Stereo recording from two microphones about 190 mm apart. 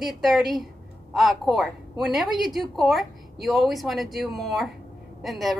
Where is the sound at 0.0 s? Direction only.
Centre (ahead or behind).